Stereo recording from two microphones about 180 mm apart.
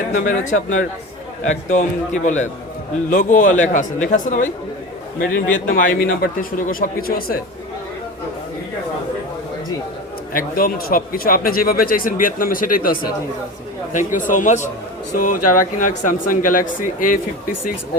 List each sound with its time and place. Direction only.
0.1 s speech: 45° left (ahead or behind)
10.3 s speech: 55° left (ahead or behind)
14.1 s speech: 45° left (ahead or behind)